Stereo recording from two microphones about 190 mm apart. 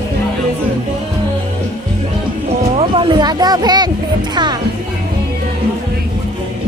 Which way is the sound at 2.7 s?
30° right (ahead or behind).